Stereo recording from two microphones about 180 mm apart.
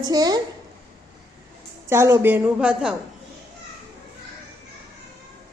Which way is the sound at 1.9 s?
15° right (ahead or behind).